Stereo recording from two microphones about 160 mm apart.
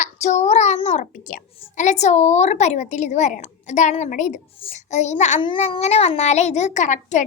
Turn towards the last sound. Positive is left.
turn(degrees=50)  # may be behind; listen again after turning